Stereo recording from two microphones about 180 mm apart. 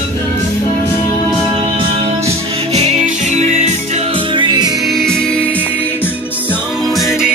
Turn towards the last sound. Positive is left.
turn(degrees=0)  # may be behind; listen again after turning